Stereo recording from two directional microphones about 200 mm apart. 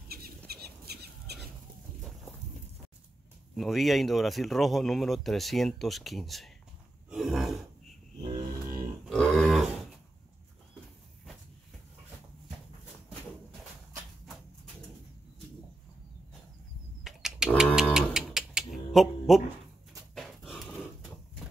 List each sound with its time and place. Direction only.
0.5 s bird flight: 50° right (ahead or behind)
3.5 s speech: centre (ahead or behind)
7.1 s throat clearing: centre (ahead or behind)
9.0 s grunt: 5° left (ahead or behind)
17.0 s a sound: centre (ahead or behind)
20.2 s dog: centre (ahead or behind)